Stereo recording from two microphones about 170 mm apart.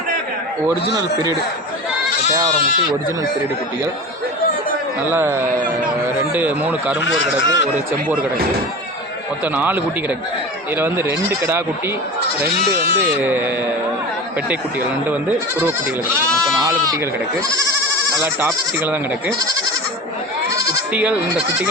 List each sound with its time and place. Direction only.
0.9 s speech: 20° right (ahead or behind)
5.0 s speech: 15° right (ahead or behind)
7.4 s a man's voice: 90° left
10.8 s speech: 15° right (ahead or behind)
16.4 s speech: 20° right (ahead or behind)
20.9 s speech: 5° right (ahead or behind)